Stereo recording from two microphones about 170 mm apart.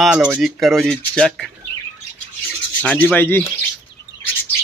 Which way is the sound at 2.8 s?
5° left (ahead or behind).